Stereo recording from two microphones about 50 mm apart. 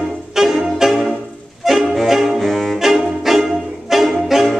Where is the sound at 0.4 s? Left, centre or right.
Centre.